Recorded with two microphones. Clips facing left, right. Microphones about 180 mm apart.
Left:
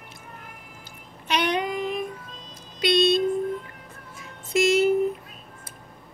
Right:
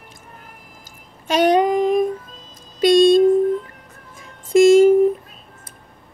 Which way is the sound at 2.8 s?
45° right (ahead or behind).